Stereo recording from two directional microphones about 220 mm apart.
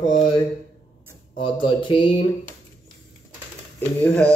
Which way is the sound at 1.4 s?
20° left (ahead or behind).